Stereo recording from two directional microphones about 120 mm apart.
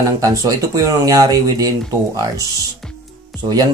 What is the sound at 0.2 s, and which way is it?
Speech, 30° right (ahead or behind).